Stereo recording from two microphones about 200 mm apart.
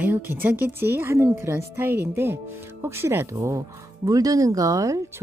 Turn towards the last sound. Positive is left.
turn(degrees=-15)  # may be behind; listen again after turning